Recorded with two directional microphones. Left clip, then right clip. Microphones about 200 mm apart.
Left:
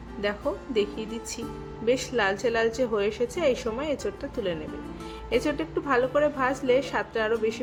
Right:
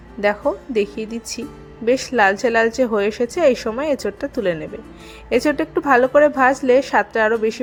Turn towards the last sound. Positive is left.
turn(degrees=-30)  # may be behind; listen again after turning